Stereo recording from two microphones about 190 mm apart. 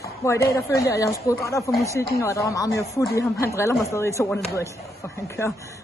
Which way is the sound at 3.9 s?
15° left (ahead or behind).